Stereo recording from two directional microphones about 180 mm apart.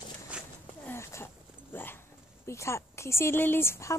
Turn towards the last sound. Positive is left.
turn(degrees=15)  # may be behind; listen again after turning